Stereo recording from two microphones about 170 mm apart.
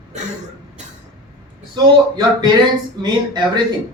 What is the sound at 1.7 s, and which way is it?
Speech, 25° right (ahead or behind).